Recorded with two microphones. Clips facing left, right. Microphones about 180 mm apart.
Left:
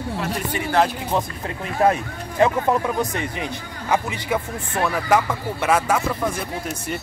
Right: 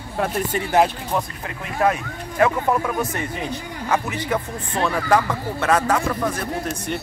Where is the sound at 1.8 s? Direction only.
25° left (ahead or behind).